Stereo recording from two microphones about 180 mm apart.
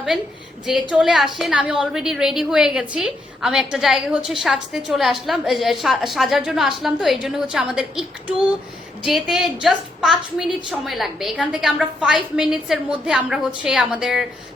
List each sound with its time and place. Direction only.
0.6 s a woman's voice: 5° right (ahead or behind)